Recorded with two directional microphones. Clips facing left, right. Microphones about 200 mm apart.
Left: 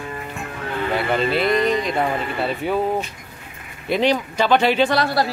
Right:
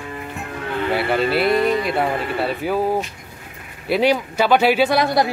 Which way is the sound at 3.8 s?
10° right (ahead or behind).